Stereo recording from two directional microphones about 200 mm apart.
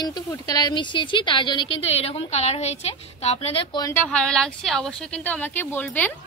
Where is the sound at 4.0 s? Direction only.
5° left (ahead or behind).